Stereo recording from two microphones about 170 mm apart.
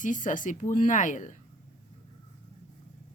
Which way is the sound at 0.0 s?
50° left (ahead or behind).